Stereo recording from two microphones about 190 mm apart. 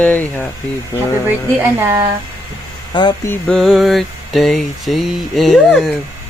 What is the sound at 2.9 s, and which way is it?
Speech, 25° left (ahead or behind).